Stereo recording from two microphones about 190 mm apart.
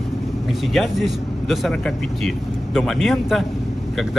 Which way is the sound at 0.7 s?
Centre (ahead or behind).